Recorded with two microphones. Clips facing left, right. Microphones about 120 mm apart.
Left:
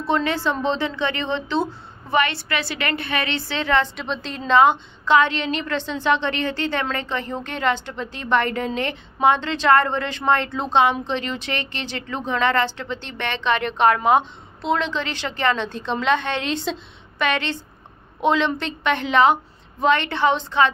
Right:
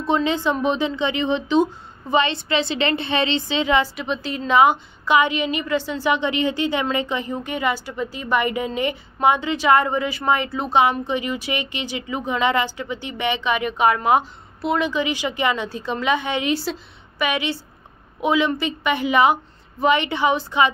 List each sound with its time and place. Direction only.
0.0 s a woman's voice: 20° right (ahead or behind)